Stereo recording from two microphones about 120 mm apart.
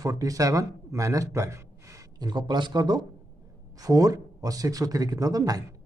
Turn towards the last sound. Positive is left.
turn(degrees=-30)  # may be behind; listen again after turning